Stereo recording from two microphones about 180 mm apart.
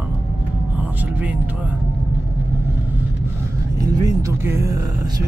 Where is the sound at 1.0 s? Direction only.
10° right (ahead or behind).